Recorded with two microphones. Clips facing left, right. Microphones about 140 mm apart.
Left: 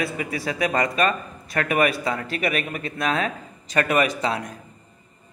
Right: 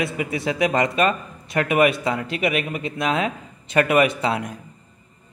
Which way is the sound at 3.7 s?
15° right (ahead or behind).